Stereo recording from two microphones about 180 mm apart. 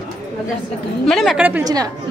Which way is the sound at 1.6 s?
20° right (ahead or behind).